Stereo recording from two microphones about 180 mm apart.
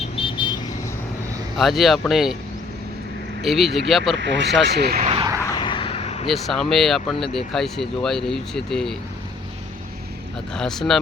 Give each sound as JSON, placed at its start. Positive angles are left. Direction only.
{"t": 0.2, "sound": "vehicle", "side_deg": 25}
{"t": 1.5, "sound": "speech", "side_deg": 0}
{"t": 3.4, "sound": "speech", "side_deg": 0}
{"t": 4.2, "sound": "speech", "side_deg": -80}
{"t": 4.4, "sound": "speech", "side_deg": 0}
{"t": 4.7, "sound": "speech", "side_deg": -65}
{"t": 4.9, "sound": "vehicle", "side_deg": -35}
{"t": 5.4, "sound": "vehicle", "side_deg": 15}
{"t": 5.6, "sound": "vehicle", "side_deg": 30}
{"t": 6.2, "sound": "speech", "side_deg": 0}
{"t": 10.5, "sound": "speech", "side_deg": 5}